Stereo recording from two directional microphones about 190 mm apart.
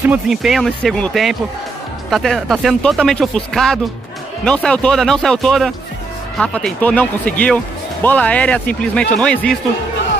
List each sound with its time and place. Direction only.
0.0 s speech: 5° right (ahead or behind)